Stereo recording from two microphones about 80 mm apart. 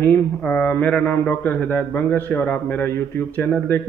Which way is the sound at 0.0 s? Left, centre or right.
Centre.